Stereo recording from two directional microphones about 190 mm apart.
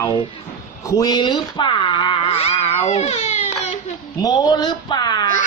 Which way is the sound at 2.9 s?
35° left (ahead or behind).